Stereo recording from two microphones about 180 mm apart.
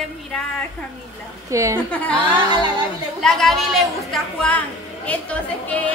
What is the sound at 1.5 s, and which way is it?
Speech, 15° right (ahead or behind).